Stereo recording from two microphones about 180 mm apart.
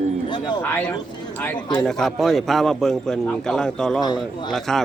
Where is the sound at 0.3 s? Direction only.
25° left (ahead or behind).